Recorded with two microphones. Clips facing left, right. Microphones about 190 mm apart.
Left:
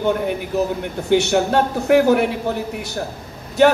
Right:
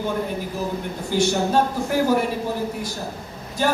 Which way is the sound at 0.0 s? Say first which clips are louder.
Left 5 dB; 70° left (ahead or behind).